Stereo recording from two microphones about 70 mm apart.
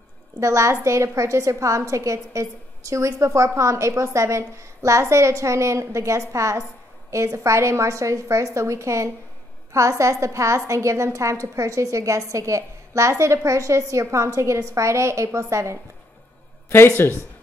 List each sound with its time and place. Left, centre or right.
0.4 s a woman's voice: right
16.6 s speech: left